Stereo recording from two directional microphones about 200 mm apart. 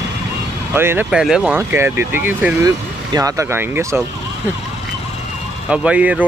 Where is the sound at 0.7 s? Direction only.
10° right (ahead or behind).